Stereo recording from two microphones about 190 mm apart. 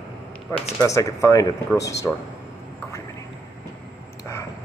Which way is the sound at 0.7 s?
15° left (ahead or behind).